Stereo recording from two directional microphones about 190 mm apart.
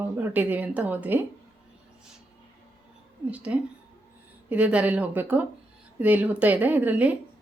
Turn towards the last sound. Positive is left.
turn(degrees=-10)  # may be behind; listen again after turning